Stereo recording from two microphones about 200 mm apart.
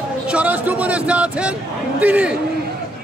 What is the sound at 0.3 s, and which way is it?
A man's voice, 5° right (ahead or behind).